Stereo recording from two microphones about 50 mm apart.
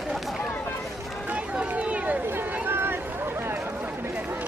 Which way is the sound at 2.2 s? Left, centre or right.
Right.